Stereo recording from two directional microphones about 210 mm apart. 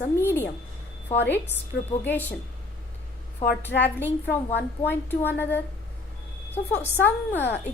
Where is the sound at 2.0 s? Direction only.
10° left (ahead or behind).